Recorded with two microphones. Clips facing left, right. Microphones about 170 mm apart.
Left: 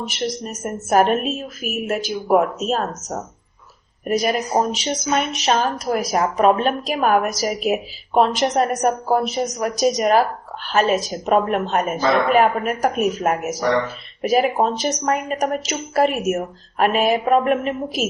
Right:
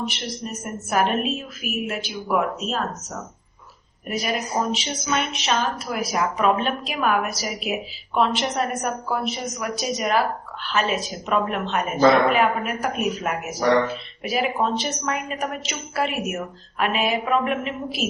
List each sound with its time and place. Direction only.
0.4 s a woman's voice: 45° left (ahead or behind)